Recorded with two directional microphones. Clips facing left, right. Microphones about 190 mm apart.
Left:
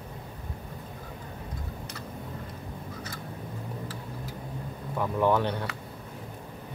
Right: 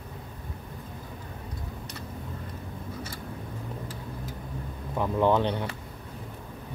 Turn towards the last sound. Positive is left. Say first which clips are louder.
# right 1 dB
turn(degrees=-20)  # may be behind; listen again after turning